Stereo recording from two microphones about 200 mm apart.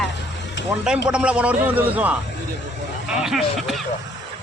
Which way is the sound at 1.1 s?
5° right (ahead or behind).